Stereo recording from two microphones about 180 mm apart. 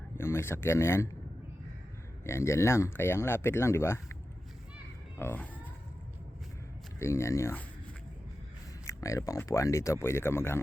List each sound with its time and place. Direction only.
0.2 s speech: 15° left (ahead or behind)
2.2 s speech: 15° left (ahead or behind)
5.1 s a sound: 10° left (ahead or behind)
7.0 s speech: 15° left (ahead or behind)
8.9 s speech: 15° left (ahead or behind)